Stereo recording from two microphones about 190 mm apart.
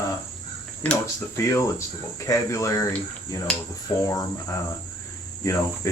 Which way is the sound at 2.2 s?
15° left (ahead or behind).